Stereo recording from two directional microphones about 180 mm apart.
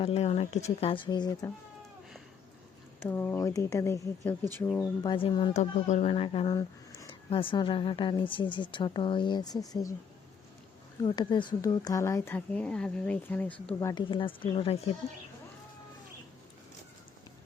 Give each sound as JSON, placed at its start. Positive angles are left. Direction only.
{"t": 0.0, "sound": "speech", "side_deg": 35}
{"t": 3.0, "sound": "speech", "side_deg": 10}
{"t": 4.8, "sound": "speech", "side_deg": 25}
{"t": 5.5, "sound": "speech", "side_deg": 40}
{"t": 11.0, "sound": "speech", "side_deg": 25}